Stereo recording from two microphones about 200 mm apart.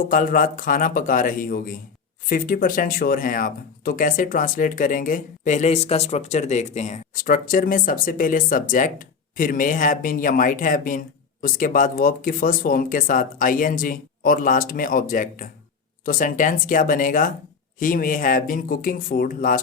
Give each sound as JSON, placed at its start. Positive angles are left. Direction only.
{"t": 0.1, "sound": "speech", "side_deg": 40}